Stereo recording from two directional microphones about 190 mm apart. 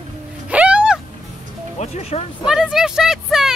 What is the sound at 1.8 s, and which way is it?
Speech, 35° left (ahead or behind).